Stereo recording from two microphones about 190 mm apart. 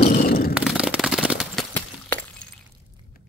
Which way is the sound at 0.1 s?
50° left (ahead or behind).